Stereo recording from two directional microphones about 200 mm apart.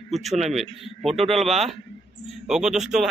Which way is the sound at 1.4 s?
30° right (ahead or behind).